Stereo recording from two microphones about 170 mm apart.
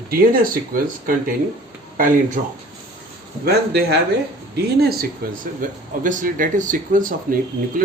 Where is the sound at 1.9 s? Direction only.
50° right (ahead or behind).